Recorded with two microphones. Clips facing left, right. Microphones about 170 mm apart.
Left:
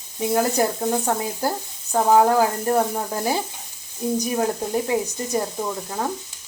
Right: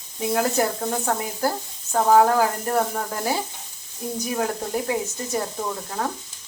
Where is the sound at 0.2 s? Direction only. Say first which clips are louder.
Left 2 dB; 15° left (ahead or behind).